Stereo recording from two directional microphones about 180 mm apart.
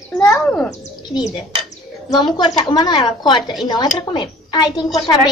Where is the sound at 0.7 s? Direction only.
20° left (ahead or behind).